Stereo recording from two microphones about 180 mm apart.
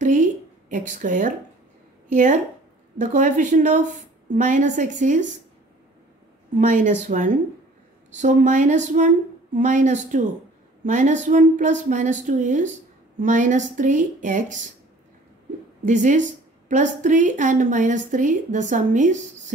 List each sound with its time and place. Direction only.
0.0 s a sound: 45° right (ahead or behind)
2.0 s a woman's voice: 45° right (ahead or behind)
6.5 s a woman's voice: 45° right (ahead or behind)
15.8 s a woman's voice: 45° right (ahead or behind)